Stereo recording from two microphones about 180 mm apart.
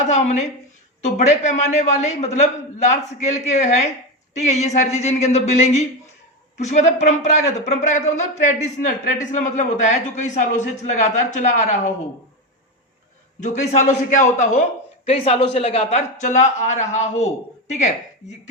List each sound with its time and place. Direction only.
1.0 s a man's voice: 40° left (ahead or behind)
13.4 s a man's voice: 40° left (ahead or behind)